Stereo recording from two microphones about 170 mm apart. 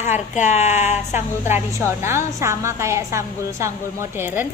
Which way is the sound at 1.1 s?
15° right (ahead or behind).